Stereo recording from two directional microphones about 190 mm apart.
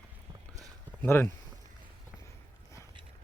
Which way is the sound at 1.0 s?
10° left (ahead or behind).